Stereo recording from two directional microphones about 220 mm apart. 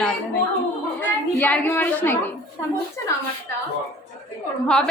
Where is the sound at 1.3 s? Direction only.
5° left (ahead or behind).